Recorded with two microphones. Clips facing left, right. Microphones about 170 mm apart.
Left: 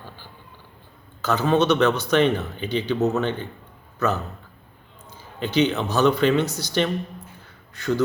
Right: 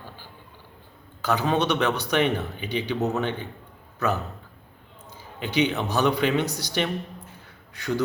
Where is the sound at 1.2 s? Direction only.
15° right (ahead or behind).